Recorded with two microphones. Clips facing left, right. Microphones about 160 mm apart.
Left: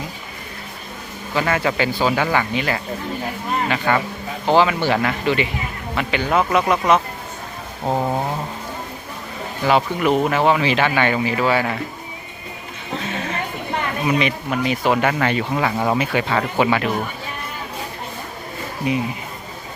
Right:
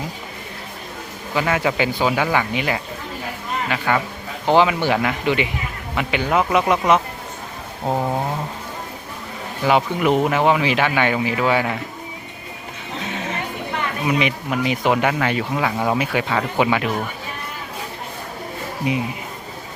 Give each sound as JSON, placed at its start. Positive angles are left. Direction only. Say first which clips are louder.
{"t": 1.3, "sound": "speech", "louder": "even", "side_deg": -10}
{"t": 3.7, "sound": "a sound", "louder": "even", "side_deg": -5}
{"t": 4.4, "sound": "speech", "louder": "even", "side_deg": -15}
{"t": 7.9, "sound": "a sound", "louder": "left 1 dB", "side_deg": 5}
{"t": 9.6, "sound": "speech", "louder": "even", "side_deg": -15}
{"t": 14.2, "sound": "speech", "louder": "even", "side_deg": -15}